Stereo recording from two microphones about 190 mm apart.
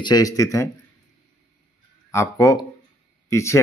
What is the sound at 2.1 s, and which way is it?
A man's voice, 15° left (ahead or behind).